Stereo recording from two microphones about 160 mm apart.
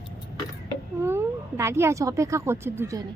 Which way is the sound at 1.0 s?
15° right (ahead or behind).